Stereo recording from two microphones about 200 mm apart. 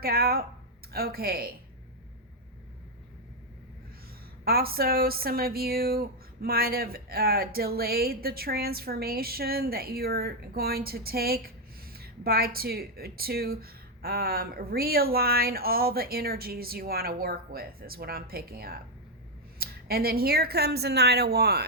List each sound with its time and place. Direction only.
0.0 s speech: 50° right (ahead or behind)
4.4 s speech: 50° right (ahead or behind)